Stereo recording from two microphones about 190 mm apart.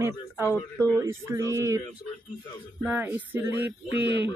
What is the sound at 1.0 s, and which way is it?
Speech, 15° right (ahead or behind).